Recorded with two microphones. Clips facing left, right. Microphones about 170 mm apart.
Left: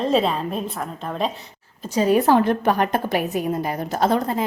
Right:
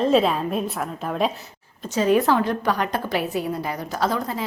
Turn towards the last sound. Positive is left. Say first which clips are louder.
# left 4 dB
turn(degrees=50)  # may be behind; listen again after turning